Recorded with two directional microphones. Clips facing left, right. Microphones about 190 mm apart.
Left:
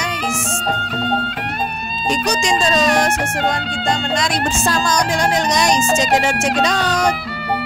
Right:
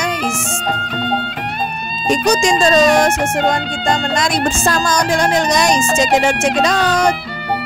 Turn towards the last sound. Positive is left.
turn(degrees=-50)  # may be behind; listen again after turning